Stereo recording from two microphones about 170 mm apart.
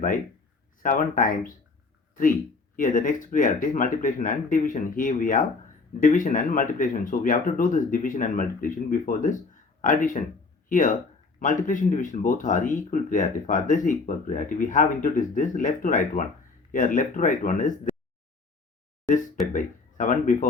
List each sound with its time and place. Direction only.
0.8 s speech: 55° left (ahead or behind)
2.7 s speech: 50° left (ahead or behind)
19.5 s speech: 50° left (ahead or behind)